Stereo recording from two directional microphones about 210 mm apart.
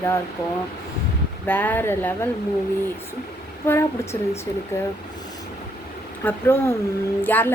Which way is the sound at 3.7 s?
10° left (ahead or behind).